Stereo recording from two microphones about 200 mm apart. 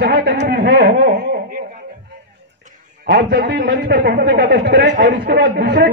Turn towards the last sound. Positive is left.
turn(degrees=-55)  # may be behind; listen again after turning